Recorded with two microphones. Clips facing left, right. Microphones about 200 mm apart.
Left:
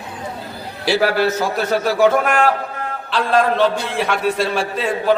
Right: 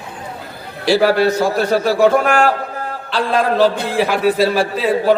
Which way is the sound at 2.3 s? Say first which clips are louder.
Right 2 dB; 35° right (ahead or behind).